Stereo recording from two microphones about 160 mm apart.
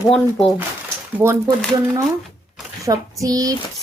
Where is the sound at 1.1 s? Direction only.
15° right (ahead or behind).